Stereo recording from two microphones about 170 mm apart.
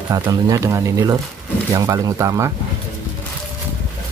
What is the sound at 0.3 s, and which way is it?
Speech, 20° right (ahead or behind).